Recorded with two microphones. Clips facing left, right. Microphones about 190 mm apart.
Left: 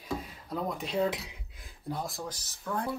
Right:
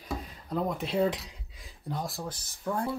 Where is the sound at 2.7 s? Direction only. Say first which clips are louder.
Right 3 dB; 15° right (ahead or behind).